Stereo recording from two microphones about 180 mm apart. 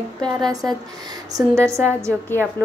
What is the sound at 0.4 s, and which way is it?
A woman's voice, 20° right (ahead or behind).